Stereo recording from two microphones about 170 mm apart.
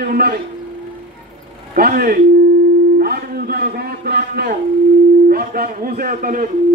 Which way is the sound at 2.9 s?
65° right (ahead or behind).